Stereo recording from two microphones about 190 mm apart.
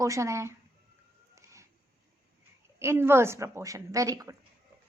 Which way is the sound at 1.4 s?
15° right (ahead or behind).